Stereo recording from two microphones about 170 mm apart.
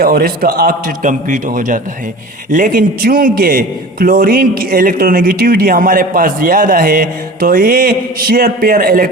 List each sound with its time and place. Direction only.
0.0 s a man's voice: 60° right (ahead or behind)